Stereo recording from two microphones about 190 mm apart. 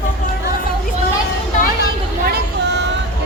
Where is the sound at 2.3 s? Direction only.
65° right (ahead or behind).